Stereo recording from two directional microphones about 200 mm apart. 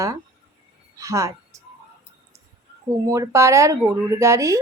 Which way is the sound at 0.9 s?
15° right (ahead or behind).